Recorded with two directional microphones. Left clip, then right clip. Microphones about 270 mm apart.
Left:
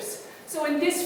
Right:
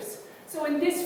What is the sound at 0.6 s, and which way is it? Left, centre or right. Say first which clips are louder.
Speech: left 1 dB; centre.